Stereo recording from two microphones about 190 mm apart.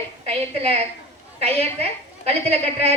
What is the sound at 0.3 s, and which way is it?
A woman's voice, 30° right (ahead or behind).